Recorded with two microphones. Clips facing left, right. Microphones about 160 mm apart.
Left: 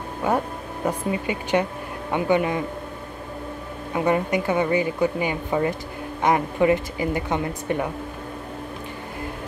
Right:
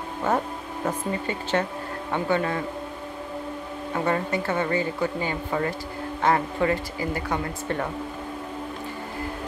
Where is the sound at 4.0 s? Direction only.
15° left (ahead or behind).